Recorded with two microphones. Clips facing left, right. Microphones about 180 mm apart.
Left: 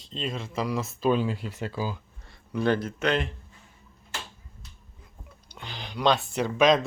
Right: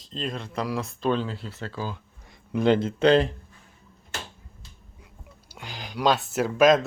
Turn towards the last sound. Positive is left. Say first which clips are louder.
# right 3 dB
turn(degrees=-5)  # may be behind; listen again after turning